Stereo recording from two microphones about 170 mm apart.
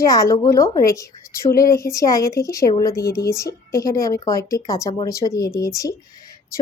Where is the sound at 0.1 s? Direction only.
20° left (ahead or behind).